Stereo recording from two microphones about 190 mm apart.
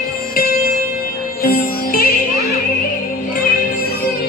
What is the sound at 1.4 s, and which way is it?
Music, 50° left (ahead or behind).